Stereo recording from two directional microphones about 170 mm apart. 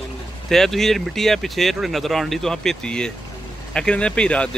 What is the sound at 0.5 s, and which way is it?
Speech, centre (ahead or behind).